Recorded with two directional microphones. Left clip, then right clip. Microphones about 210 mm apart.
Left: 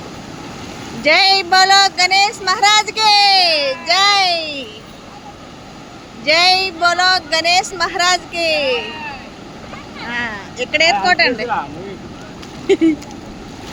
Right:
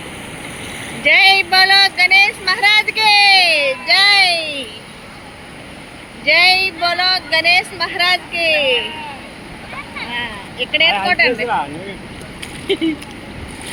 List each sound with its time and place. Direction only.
1.0 s speech: 15° left (ahead or behind)
6.2 s speech: 10° left (ahead or behind)
10.1 s vehicle: 15° left (ahead or behind)
11.0 s speech: 15° left (ahead or behind)
12.6 s speech: 20° left (ahead or behind)